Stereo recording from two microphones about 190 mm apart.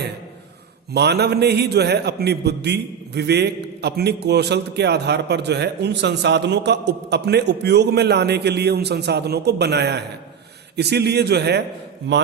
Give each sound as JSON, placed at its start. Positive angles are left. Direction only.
{"t": 0.9, "sound": "a man's voice", "side_deg": -60}